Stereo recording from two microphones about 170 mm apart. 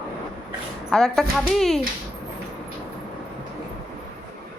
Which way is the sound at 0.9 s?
Centre (ahead or behind).